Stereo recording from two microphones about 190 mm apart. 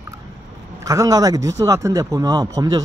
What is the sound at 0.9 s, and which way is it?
Speech, 20° right (ahead or behind).